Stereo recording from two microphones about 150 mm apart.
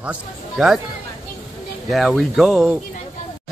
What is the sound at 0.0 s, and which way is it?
Speech, 5° right (ahead or behind).